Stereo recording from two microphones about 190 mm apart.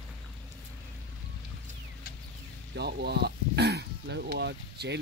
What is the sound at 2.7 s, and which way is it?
Speech, 60° right (ahead or behind).